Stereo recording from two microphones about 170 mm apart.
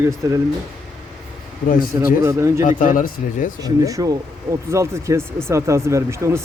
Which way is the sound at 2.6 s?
55° left (ahead or behind).